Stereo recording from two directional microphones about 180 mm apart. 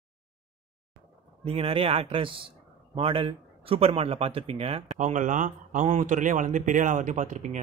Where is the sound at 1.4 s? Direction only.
35° right (ahead or behind).